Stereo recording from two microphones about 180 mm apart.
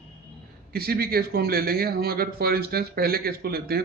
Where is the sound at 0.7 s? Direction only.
55° right (ahead or behind).